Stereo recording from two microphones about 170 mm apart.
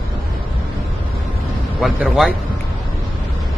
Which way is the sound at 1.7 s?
Centre (ahead or behind).